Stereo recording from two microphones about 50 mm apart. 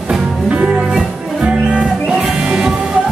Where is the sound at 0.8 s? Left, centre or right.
Centre.